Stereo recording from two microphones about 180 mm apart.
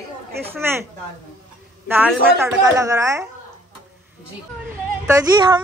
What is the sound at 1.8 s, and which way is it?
A woman's voice, 10° right (ahead or behind).